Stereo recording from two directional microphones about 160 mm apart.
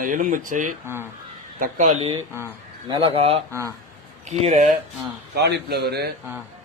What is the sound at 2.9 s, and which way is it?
Speech, 35° right (ahead or behind).